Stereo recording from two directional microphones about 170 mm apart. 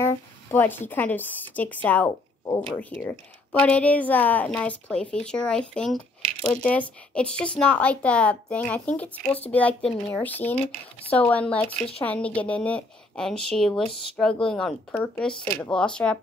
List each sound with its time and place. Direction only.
0.0 s speech: 10° left (ahead or behind)
2.0 s speech: 20° left (ahead or behind)
2.8 s speech: 10° left (ahead or behind)